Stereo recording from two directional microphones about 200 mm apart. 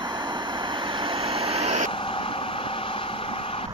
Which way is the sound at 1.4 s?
30° right (ahead or behind).